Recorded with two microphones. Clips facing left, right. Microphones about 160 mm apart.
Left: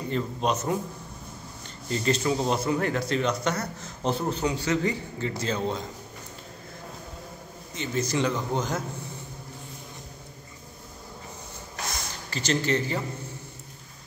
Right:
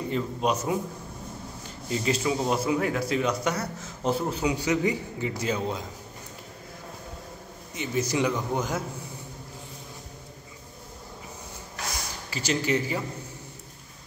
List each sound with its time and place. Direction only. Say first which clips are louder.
0.1 s speech: even; 5° right (ahead or behind)
1.9 s speech: left 1 dB; 5° right (ahead or behind)
7.7 s speech: even; 10° right (ahead or behind)
12.3 s speech: left 1 dB; 10° right (ahead or behind)